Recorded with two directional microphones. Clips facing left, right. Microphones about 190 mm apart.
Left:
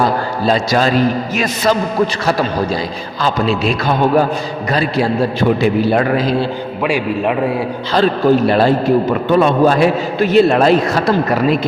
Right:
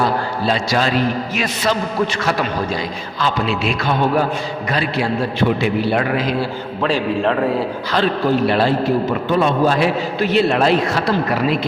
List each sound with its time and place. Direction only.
0.0 s a man's voice: 45° left (ahead or behind)
6.8 s a man's voice: 10° left (ahead or behind)
7.9 s a man's voice: 45° left (ahead or behind)